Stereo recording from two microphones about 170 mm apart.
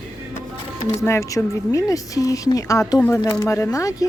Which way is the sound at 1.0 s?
15° left (ahead or behind).